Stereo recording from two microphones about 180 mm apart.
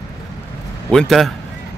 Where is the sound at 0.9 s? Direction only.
Centre (ahead or behind).